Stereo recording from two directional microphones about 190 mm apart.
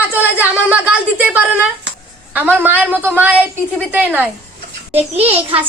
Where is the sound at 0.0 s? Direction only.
10° right (ahead or behind).